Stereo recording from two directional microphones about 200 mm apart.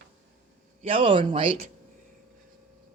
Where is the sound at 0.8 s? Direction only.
25° right (ahead or behind).